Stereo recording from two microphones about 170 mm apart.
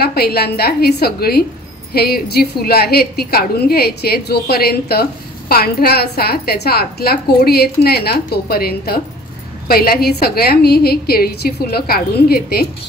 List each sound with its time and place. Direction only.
0.0 s a woman's voice: 65° left (ahead or behind)